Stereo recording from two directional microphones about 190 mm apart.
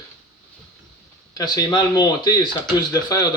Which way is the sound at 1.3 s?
20° left (ahead or behind).